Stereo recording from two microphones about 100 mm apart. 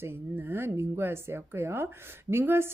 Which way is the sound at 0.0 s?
20° right (ahead or behind).